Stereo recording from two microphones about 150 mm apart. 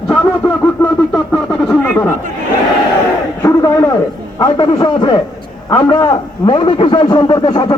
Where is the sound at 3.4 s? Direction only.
20° left (ahead or behind).